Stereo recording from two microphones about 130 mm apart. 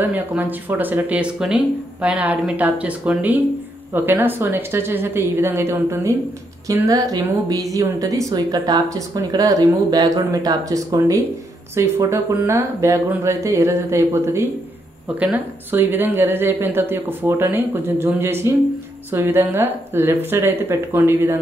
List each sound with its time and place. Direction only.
0.0 s speech: 15° right (ahead or behind)